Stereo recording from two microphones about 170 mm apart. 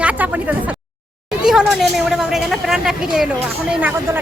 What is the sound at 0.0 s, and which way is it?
Speech, 10° right (ahead or behind).